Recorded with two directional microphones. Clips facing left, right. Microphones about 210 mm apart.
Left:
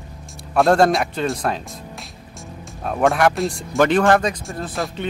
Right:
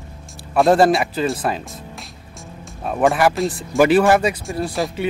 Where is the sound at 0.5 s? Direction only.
Centre (ahead or behind).